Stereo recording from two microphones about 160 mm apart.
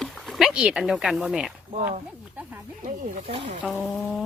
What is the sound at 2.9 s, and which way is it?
Speech, 45° right (ahead or behind).